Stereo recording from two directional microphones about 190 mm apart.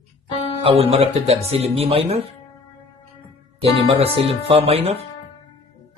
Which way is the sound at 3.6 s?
30° right (ahead or behind).